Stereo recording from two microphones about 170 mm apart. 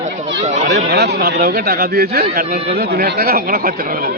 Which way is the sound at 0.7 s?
80° right.